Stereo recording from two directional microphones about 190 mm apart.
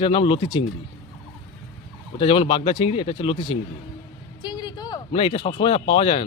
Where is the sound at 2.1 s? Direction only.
30° left (ahead or behind).